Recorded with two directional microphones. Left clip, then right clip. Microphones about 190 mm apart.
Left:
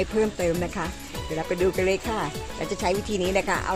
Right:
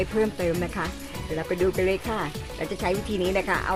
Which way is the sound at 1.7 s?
20° left (ahead or behind).